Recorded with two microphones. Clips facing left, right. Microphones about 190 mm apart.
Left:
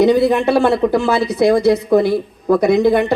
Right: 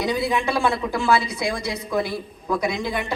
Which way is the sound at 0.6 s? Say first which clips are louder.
Left 9 dB; 65° left (ahead or behind).